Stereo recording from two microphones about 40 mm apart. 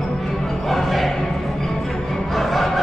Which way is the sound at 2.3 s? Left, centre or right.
Centre.